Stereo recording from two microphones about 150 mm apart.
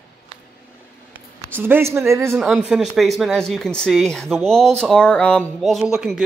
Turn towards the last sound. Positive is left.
turn(degrees=-5)  # may be behind; listen again after turning